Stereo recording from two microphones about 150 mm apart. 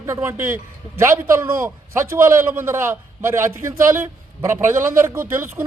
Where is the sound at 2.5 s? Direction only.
15° right (ahead or behind).